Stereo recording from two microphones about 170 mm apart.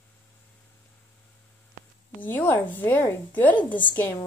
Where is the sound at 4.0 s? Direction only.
15° left (ahead or behind).